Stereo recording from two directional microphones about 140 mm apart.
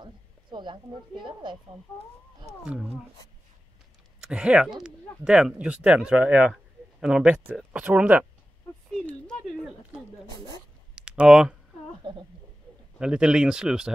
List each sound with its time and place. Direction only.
0.0 s a woman's voice: 35° right (ahead or behind)
2.6 s speech: 5° right (ahead or behind)
4.2 s speech: 5° right (ahead or behind)
10.3 s speech: 30° left (ahead or behind)
11.0 s speech: 5° right (ahead or behind)
12.0 s a sound: 35° right (ahead or behind)
13.0 s speech: 5° right (ahead or behind)